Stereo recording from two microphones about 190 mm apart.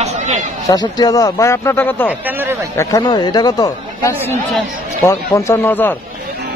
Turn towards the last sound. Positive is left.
turn(degrees=10)  # may be behind; listen again after turning